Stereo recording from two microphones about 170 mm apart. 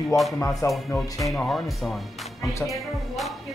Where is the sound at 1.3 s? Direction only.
Centre (ahead or behind).